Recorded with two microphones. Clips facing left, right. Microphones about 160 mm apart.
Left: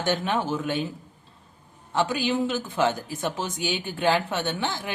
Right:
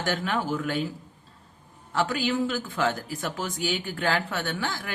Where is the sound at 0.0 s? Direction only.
20° left (ahead or behind).